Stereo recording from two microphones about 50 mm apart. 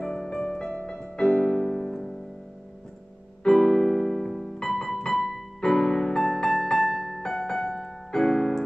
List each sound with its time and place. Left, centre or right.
0.0 s music: centre
3.4 s piano: centre
4.6 s music: centre
8.1 s keyboard: centre